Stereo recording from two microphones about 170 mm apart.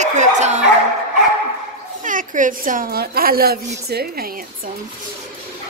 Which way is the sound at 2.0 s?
50° right (ahead or behind).